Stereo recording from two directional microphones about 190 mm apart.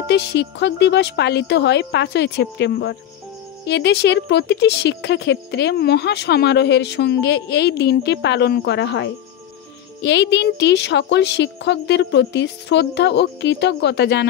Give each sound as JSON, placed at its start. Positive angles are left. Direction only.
{"t": 0.0, "sound": "speech", "side_deg": 65}